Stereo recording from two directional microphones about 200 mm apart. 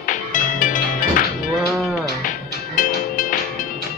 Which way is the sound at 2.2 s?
40° left (ahead or behind).